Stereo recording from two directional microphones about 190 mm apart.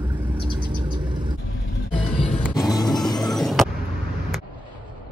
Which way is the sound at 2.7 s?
20° left (ahead or behind).